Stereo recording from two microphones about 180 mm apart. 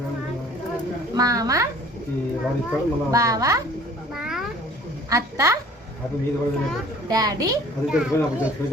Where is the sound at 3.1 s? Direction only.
20° right (ahead or behind).